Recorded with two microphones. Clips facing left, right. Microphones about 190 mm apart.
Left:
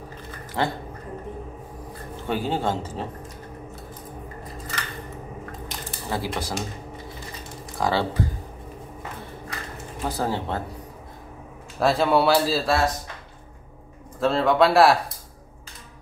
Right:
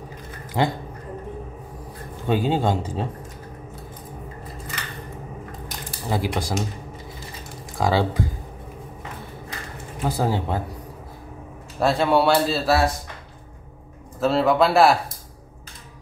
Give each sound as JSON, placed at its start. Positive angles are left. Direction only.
{"t": 0.6, "sound": "a man's voice", "side_deg": -15}
{"t": 2.2, "sound": "a man's voice", "side_deg": -15}
{"t": 6.0, "sound": "a man's voice", "side_deg": -15}
{"t": 7.7, "sound": "speech", "side_deg": -15}
{"t": 10.0, "sound": "a man's voice", "side_deg": -10}
{"t": 11.8, "sound": "speech", "side_deg": 0}
{"t": 14.2, "sound": "speech", "side_deg": -5}